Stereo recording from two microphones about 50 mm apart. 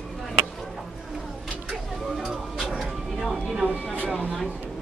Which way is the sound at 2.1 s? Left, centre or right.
Centre.